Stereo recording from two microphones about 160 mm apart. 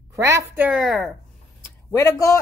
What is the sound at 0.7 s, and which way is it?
Speech, centre (ahead or behind).